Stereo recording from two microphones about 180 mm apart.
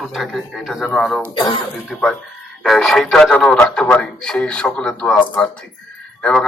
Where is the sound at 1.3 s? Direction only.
25° left (ahead or behind).